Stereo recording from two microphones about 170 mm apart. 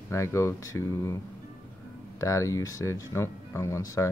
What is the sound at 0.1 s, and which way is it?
Speech, 15° left (ahead or behind).